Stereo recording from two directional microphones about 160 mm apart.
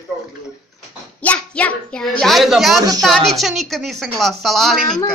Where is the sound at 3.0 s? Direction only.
Centre (ahead or behind).